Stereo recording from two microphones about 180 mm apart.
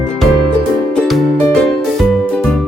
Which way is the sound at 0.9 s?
5° left (ahead or behind).